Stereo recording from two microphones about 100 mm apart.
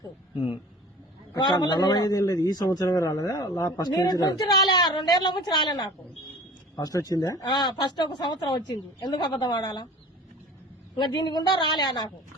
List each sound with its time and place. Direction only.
1.3 s a man's voice: 40° left (ahead or behind)
10.9 s speech: 45° left (ahead or behind)